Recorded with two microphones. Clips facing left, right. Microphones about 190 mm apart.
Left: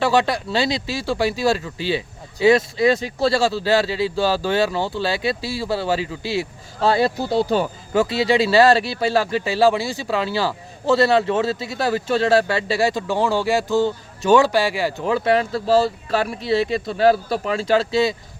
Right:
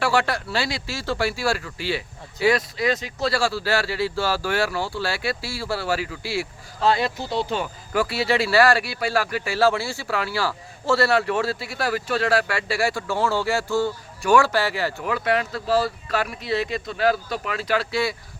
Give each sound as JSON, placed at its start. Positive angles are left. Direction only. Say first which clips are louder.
{"t": 0.0, "sound": "speech", "louder": "left 4 dB", "side_deg": 20}
{"t": 6.8, "sound": "speech", "louder": "left 4 dB", "side_deg": 35}
{"t": 7.9, "sound": "speech", "louder": "left 4 dB", "side_deg": 20}
{"t": 15.0, "sound": "speech", "louder": "left 6 dB", "side_deg": 30}